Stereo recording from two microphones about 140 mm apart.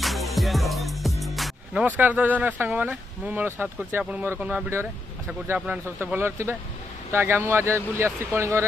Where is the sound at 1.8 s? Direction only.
10° right (ahead or behind).